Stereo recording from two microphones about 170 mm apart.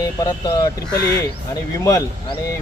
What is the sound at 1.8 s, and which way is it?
Speech, 20° left (ahead or behind).